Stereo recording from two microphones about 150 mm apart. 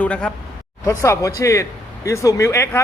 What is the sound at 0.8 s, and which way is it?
Speech, 20° left (ahead or behind).